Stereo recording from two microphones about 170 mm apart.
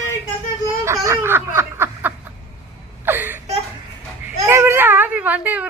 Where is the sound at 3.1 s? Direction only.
10° right (ahead or behind).